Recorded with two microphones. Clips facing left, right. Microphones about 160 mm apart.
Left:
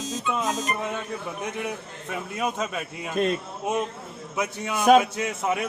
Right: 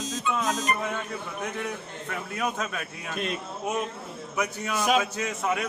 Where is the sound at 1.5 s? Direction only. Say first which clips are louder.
Left 1 dB; 15° left (ahead or behind).